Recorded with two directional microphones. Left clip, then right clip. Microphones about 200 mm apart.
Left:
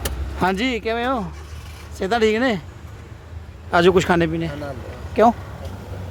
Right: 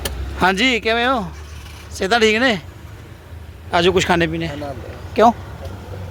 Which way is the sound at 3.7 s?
25° left (ahead or behind).